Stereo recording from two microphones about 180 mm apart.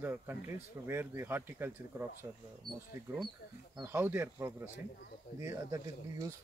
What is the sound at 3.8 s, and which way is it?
Speech, 10° right (ahead or behind).